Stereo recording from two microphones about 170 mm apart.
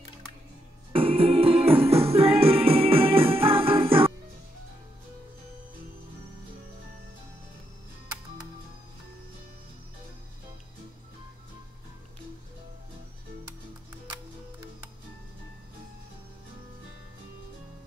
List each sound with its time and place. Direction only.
0.9 s music: 35° right (ahead or behind)